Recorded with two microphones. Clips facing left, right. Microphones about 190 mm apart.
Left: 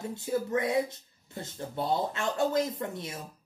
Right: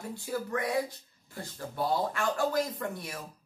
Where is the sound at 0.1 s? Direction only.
20° left (ahead or behind).